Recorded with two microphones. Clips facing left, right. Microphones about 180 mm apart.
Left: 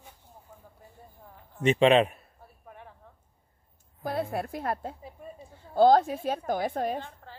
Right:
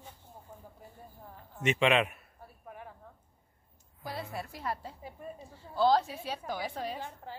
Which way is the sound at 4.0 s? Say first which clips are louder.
Left 9 dB; 55° left (ahead or behind).